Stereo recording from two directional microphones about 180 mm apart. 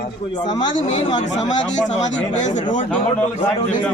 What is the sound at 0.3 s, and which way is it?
Speech, 25° left (ahead or behind).